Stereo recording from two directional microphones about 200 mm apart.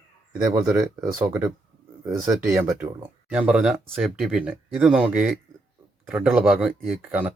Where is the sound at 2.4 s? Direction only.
15° right (ahead or behind).